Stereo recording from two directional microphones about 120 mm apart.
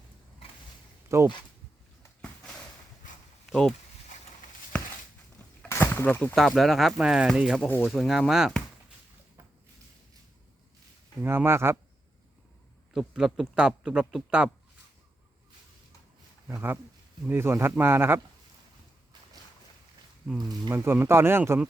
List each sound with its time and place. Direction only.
1.0 s speech: 25° right (ahead or behind)
3.5 s speech: centre (ahead or behind)
5.6 s a sound: 20° left (ahead or behind)
6.3 s a man's voice: centre (ahead or behind)
7.6 s speech: 15° left (ahead or behind)
7.9 s a man's voice: centre (ahead or behind)
11.2 s speech: 20° right (ahead or behind)
12.9 s a man's voice: 5° right (ahead or behind)
17.2 s speech: 20° right (ahead or behind)
20.7 s speech: 15° right (ahead or behind)